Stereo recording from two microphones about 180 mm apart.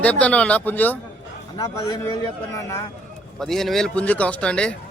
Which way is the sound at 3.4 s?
Centre (ahead or behind).